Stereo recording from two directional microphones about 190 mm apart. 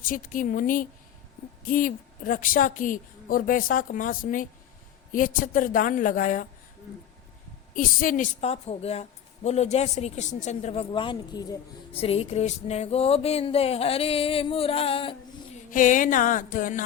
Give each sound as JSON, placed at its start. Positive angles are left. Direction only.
{"t": 0.0, "sound": "a woman's voice", "side_deg": 45}
{"t": 7.8, "sound": "a woman's voice", "side_deg": 45}
{"t": 11.9, "sound": "a woman's voice", "side_deg": 30}
{"t": 15.7, "sound": "a woman's voice", "side_deg": 45}